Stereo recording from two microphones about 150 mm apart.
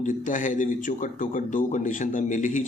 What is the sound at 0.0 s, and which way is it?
A man's voice, 60° left (ahead or behind).